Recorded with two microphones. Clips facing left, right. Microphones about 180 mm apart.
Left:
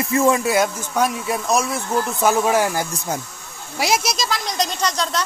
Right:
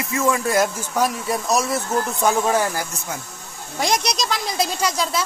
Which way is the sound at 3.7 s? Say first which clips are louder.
Left 1 dB; 5° left (ahead or behind).